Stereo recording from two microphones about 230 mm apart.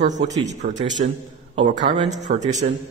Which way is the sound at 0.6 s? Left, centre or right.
Right.